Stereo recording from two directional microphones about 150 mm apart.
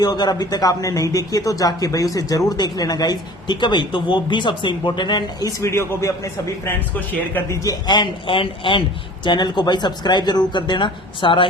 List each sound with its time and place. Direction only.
0.0 s speech: 25° left (ahead or behind)